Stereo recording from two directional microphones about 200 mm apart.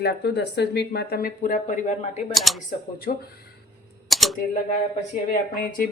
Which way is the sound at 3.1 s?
45° left (ahead or behind).